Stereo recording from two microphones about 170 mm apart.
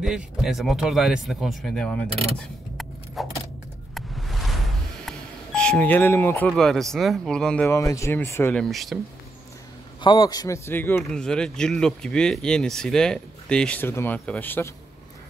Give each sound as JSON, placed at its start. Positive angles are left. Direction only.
{"t": 0.0, "sound": "speech", "side_deg": 0}
{"t": 2.0, "sound": "speech", "side_deg": -35}
{"t": 2.3, "sound": "a sound", "side_deg": 5}
{"t": 6.5, "sound": "speech", "side_deg": 0}
{"t": 7.7, "sound": "speech", "side_deg": 15}
{"t": 8.6, "sound": "speech", "side_deg": 0}
{"t": 10.0, "sound": "speech", "side_deg": 25}